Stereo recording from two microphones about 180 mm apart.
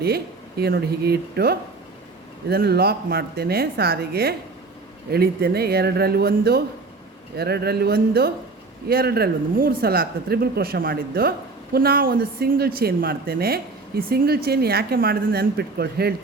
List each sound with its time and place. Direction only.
0.0 s speech: 60° right (ahead or behind)